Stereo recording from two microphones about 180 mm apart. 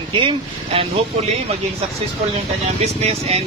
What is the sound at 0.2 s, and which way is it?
Speech, 30° right (ahead or behind).